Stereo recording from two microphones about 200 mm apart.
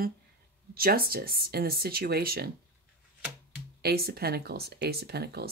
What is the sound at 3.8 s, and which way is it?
Speech, 50° right (ahead or behind).